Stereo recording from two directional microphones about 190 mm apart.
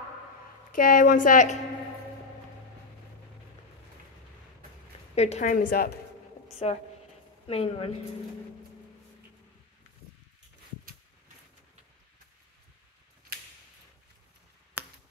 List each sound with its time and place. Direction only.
0.7 s a woman's voice: 45° left (ahead or behind)
5.1 s a woman's voice: 35° left (ahead or behind); by 5.9 s 50° left (ahead or behind)
6.6 s speech: 35° left (ahead or behind)